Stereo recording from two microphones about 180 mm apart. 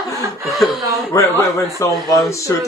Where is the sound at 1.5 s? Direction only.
15° left (ahead or behind).